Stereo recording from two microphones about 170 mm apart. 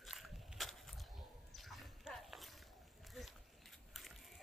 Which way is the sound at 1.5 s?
Centre (ahead or behind).